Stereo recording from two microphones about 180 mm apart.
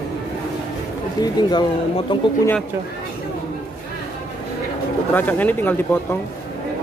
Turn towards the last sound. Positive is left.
turn(degrees=10)  # may be behind; listen again after turning